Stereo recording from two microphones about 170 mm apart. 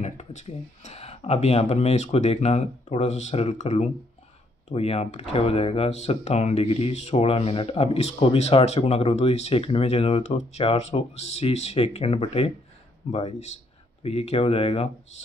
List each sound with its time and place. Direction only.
0.0 s speech: 40° left (ahead or behind)